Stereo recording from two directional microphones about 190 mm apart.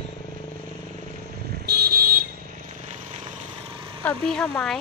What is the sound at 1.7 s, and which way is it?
Vehicle, 55° right (ahead or behind).